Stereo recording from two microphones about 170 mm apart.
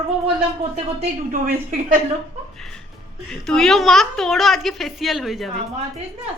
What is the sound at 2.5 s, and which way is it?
A woman's voice, 5° left (ahead or behind).